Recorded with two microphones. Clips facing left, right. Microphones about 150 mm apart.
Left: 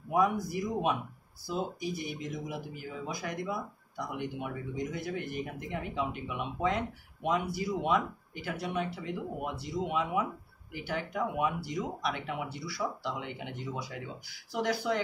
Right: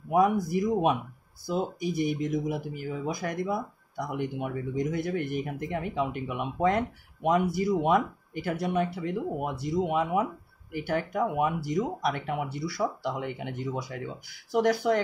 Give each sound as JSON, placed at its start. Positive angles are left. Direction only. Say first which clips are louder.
{"t": 0.1, "sound": "speech", "louder": "right 5 dB", "side_deg": -55}